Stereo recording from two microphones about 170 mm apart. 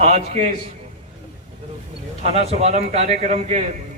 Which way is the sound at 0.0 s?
40° right (ahead or behind).